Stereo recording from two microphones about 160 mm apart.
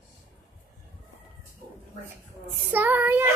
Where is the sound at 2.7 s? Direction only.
10° right (ahead or behind).